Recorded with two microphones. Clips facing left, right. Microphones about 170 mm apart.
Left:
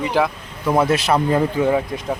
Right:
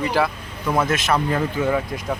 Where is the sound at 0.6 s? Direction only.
30° left (ahead or behind).